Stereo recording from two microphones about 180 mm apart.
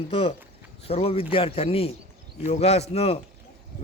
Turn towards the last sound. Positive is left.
turn(degrees=35)  # may be behind; listen again after turning